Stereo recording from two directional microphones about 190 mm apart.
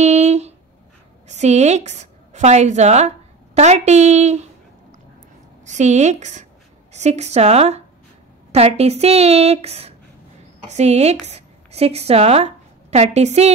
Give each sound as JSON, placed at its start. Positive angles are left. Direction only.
{"t": 0.0, "sound": "a sound", "side_deg": -35}
{"t": 1.2, "sound": "a woman's voice", "side_deg": -35}
{"t": 5.7, "sound": "a woman's voice", "side_deg": -40}